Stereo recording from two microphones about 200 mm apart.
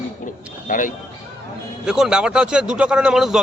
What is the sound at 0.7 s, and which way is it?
Speech, 40° left (ahead or behind).